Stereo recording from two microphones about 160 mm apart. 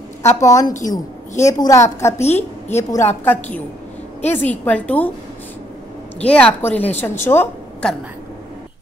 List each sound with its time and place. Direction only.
0.2 s a woman's voice: 20° left (ahead or behind)
6.1 s a woman's voice: 10° left (ahead or behind)